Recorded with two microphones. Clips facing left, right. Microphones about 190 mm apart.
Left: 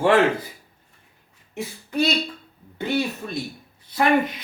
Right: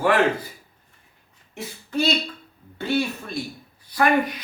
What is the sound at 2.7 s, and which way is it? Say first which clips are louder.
Speech: even; 20° left (ahead or behind).